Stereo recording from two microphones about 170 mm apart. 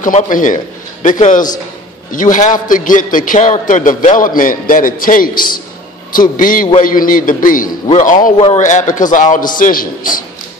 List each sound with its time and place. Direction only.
0.0 s a man's voice: 50° left (ahead or behind)